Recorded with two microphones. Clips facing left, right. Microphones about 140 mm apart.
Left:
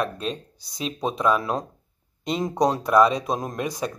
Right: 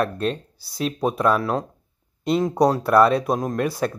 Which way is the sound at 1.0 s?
5° right (ahead or behind).